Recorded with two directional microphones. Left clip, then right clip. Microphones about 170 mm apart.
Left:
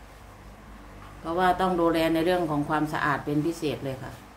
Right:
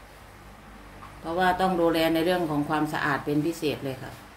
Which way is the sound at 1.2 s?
5° right (ahead or behind).